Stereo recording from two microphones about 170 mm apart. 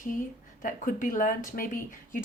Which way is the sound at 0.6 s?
50° left (ahead or behind).